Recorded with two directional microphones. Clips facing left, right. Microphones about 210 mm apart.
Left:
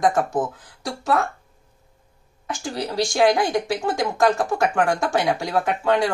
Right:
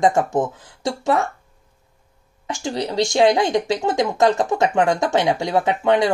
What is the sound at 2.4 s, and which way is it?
A woman's voice, 20° right (ahead or behind).